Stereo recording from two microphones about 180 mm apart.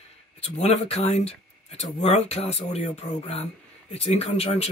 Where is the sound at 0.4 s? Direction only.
35° left (ahead or behind).